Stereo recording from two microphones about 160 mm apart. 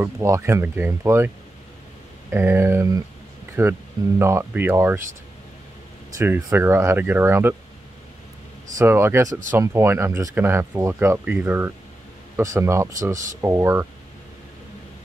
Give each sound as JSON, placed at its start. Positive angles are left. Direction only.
{"t": 0.0, "sound": "speech", "side_deg": -15}
{"t": 2.3, "sound": "speech", "side_deg": -15}
{"t": 6.1, "sound": "speech", "side_deg": -15}
{"t": 8.7, "sound": "speech", "side_deg": -15}
{"t": 13.1, "sound": "speech", "side_deg": -55}
{"t": 13.4, "sound": "speech", "side_deg": -15}